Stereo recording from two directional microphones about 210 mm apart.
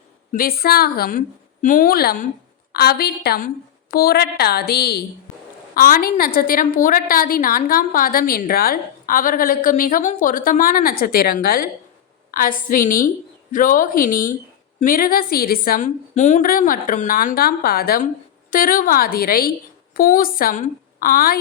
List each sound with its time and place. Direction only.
0.3 s a woman's voice: 45° left (ahead or behind)